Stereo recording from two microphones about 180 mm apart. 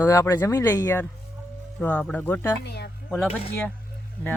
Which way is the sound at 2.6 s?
70° left (ahead or behind).